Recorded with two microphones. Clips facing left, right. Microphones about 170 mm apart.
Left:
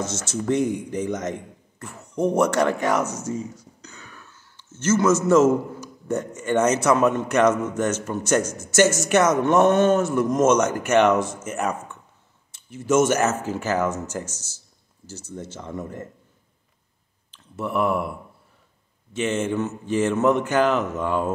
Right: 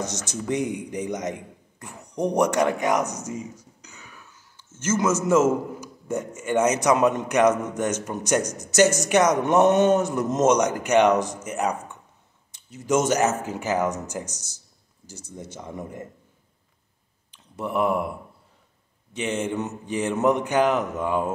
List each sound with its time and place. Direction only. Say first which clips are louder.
0.0 s speech: left 3 dB; 15° right (ahead or behind)
17.3 s speech: left 1 dB; 15° right (ahead or behind)
19.1 s speech: left 3 dB; 15° right (ahead or behind)